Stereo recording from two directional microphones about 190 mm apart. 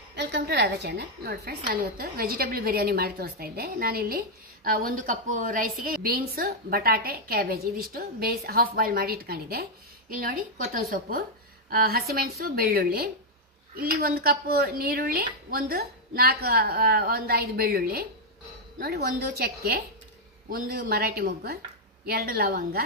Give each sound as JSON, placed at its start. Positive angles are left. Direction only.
{"t": 0.1, "sound": "a woman's voice", "side_deg": -65}